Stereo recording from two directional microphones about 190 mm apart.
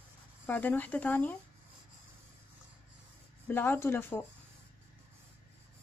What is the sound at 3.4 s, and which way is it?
Speech, 10° left (ahead or behind).